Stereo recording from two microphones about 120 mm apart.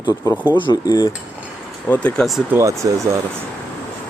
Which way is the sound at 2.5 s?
25° right (ahead or behind).